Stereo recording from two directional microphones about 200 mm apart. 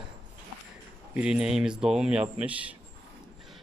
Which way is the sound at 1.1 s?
5° right (ahead or behind).